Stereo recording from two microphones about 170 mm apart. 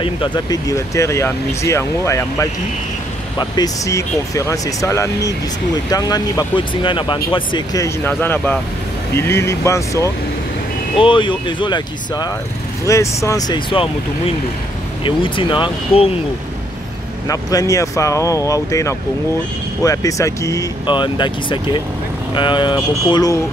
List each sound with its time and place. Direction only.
0.0 s speech: 25° left (ahead or behind)
11.0 s speech: 30° left (ahead or behind)
15.0 s speech: 30° left (ahead or behind)
17.3 s speech: 20° left (ahead or behind)